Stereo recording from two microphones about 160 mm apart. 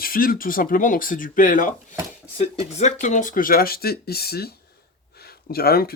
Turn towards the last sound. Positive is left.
turn(degrees=70)  # may be behind; listen again after turning